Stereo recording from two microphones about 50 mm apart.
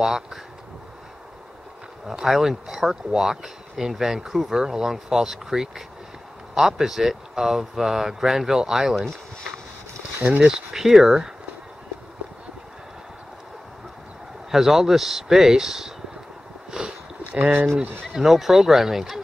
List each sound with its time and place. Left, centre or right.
0.0 s speech: centre
2.0 s speech: centre
10.4 s speech: centre
14.5 s speech: centre
16.8 s a sound: centre
17.3 s speech: right
18.0 s speech: centre